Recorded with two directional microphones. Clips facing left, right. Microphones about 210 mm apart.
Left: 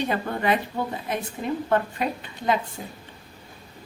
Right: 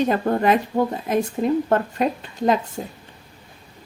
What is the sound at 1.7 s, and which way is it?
Speech, 40° right (ahead or behind).